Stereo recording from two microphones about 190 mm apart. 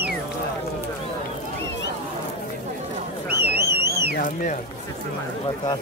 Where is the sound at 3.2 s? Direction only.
55° right (ahead or behind).